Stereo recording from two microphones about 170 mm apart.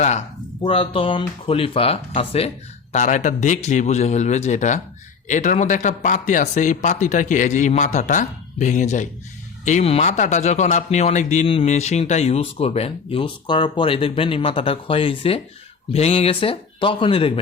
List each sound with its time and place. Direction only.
0.0 s a man's voice: 40° left (ahead or behind)